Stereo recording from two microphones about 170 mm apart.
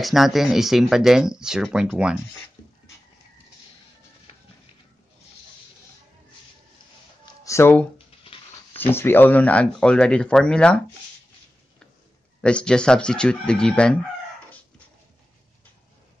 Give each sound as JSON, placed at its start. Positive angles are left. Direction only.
{"t": 0.0, "sound": "speech", "side_deg": 0}
{"t": 7.2, "sound": "a sound", "side_deg": 15}
{"t": 8.3, "sound": "dog", "side_deg": 35}
{"t": 8.7, "sound": "speech", "side_deg": 15}
{"t": 12.4, "sound": "speech", "side_deg": 5}